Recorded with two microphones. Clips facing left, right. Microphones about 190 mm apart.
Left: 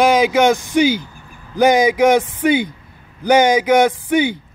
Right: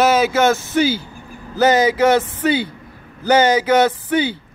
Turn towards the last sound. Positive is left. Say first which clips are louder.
# left 2 dB
turn(degrees=15)  # may be behind; listen again after turning